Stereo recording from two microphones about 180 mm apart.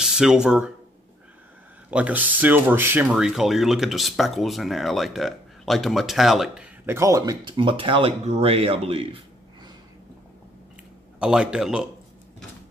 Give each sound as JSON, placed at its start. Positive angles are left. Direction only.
{"t": 0.0, "sound": "speech", "side_deg": -5}
{"t": 1.9, "sound": "speech", "side_deg": -5}
{"t": 7.0, "sound": "speech", "side_deg": -20}
{"t": 11.1, "sound": "speech", "side_deg": -5}